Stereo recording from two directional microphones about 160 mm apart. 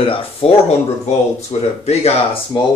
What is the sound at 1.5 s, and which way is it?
Speech, 40° left (ahead or behind).